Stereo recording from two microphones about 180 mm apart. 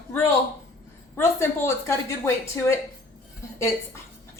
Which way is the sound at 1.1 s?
15° left (ahead or behind).